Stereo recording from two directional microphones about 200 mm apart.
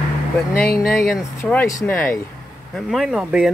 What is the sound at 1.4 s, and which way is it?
Speech, 10° left (ahead or behind).